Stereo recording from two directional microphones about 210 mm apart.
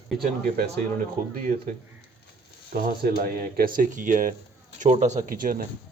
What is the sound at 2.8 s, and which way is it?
Speech, 45° right (ahead or behind).